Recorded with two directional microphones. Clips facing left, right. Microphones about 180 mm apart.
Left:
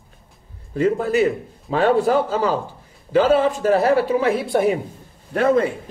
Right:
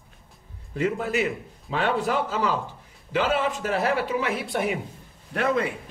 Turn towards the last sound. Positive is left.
turn(degrees=45)  # may be behind; listen again after turning